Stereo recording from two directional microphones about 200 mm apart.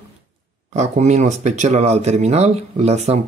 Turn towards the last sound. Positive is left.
turn(degrees=-30)  # may be behind; listen again after turning